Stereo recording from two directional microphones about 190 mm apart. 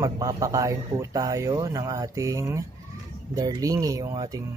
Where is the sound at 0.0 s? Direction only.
15° right (ahead or behind).